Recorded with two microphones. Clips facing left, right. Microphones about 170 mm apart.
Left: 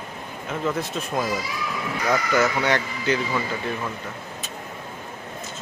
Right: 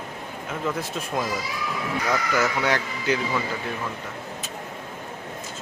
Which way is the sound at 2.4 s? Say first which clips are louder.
Left 2 dB; 5° right (ahead or behind).